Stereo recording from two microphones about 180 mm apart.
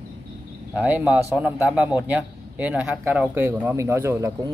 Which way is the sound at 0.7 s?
10° right (ahead or behind).